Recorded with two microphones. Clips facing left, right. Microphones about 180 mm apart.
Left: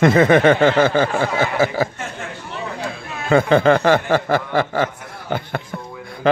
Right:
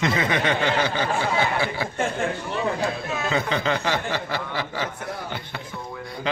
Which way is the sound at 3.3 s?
55° left (ahead or behind).